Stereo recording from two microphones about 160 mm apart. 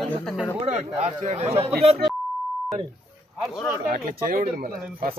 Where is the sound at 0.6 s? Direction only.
40° right (ahead or behind).